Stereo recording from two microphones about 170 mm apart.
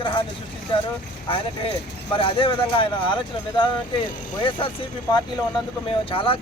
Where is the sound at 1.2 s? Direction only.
30° left (ahead or behind).